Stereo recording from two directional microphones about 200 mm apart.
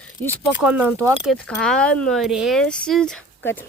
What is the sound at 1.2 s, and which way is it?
Speech, 5° left (ahead or behind).